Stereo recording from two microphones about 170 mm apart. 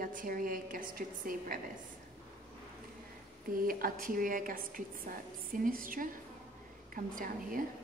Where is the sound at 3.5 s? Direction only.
55° right (ahead or behind).